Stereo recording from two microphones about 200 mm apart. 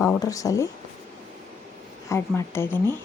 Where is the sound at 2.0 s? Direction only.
10° left (ahead or behind).